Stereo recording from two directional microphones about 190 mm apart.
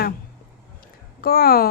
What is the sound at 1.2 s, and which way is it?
Speech, 50° left (ahead or behind).